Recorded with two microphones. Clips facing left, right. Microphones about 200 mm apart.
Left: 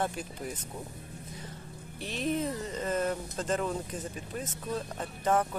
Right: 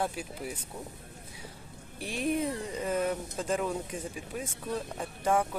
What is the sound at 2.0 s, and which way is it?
Speech, 10° right (ahead or behind).